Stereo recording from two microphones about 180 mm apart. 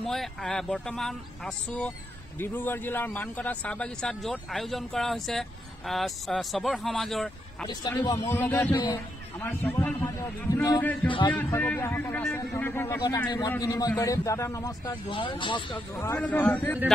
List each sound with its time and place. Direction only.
0.0 s a man's voice: centre (ahead or behind)
7.6 s a man's voice: 25° left (ahead or behind)
11.1 s a man's voice: 25° left (ahead or behind)
11.3 s a man's voice: 10° left (ahead or behind); by 15.8 s 25° left (ahead or behind)
16.0 s a man's voice: 10° left (ahead or behind)